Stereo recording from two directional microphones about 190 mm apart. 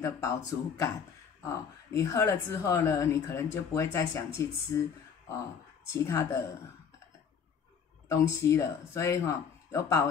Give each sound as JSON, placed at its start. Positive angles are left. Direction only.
{"t": 0.0, "sound": "speech", "side_deg": 15}
{"t": 5.9, "sound": "speech", "side_deg": 15}
{"t": 8.1, "sound": "speech", "side_deg": 15}